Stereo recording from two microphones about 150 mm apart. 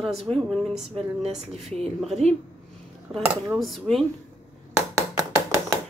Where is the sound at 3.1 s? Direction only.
5° right (ahead or behind).